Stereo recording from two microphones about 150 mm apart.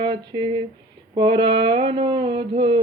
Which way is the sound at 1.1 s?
35° right (ahead or behind).